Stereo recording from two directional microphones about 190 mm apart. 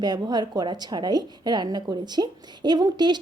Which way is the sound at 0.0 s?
20° right (ahead or behind).